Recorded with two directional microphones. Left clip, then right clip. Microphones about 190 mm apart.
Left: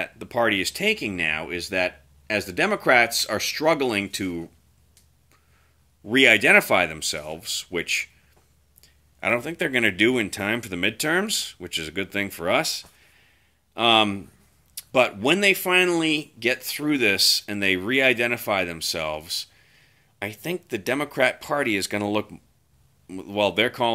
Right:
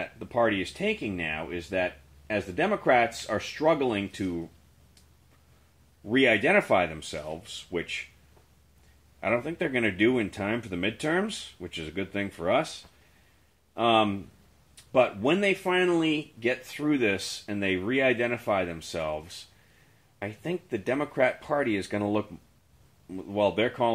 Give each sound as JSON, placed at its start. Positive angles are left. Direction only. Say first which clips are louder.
{"t": 0.0, "sound": "speech", "louder": "left 3 dB", "side_deg": 10}
{"t": 6.0, "sound": "speech", "louder": "left 6 dB", "side_deg": 5}
{"t": 9.2, "sound": "speech", "louder": "left 4 dB", "side_deg": 10}
{"t": 13.7, "sound": "speech", "louder": "left 4 dB", "side_deg": 10}